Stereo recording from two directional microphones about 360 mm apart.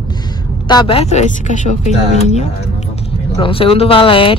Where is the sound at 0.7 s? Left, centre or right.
Centre.